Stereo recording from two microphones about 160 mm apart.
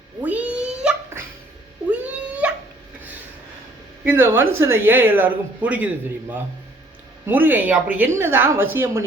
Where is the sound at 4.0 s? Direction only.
15° right (ahead or behind).